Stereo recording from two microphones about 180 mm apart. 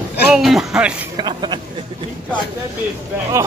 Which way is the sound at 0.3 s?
Centre (ahead or behind).